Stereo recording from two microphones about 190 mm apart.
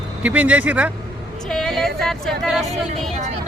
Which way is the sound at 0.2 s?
10° right (ahead or behind).